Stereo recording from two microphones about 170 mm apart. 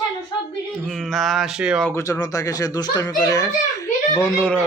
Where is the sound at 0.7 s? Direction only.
Centre (ahead or behind).